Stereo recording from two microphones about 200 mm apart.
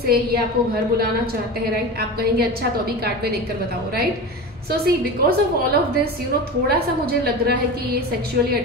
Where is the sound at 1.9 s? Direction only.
50° right (ahead or behind).